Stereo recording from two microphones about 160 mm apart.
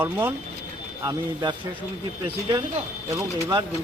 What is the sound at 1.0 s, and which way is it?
Speech, 25° right (ahead or behind).